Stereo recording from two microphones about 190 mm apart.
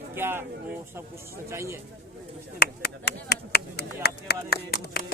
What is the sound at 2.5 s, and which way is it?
Speech, 55° left (ahead or behind).